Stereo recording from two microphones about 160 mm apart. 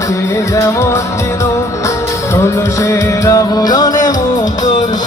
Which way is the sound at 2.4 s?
20° left (ahead or behind).